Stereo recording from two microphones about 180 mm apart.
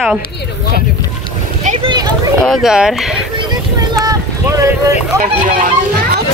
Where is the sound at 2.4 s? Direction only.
Centre (ahead or behind).